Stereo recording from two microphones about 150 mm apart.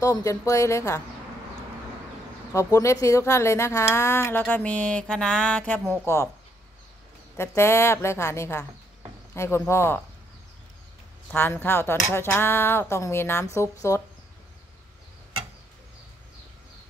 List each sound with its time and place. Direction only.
0.0 s speech: 20° left (ahead or behind)
2.5 s speech: 20° left (ahead or behind)
7.3 s speech: 15° left (ahead or behind)
11.3 s speech: 15° left (ahead or behind)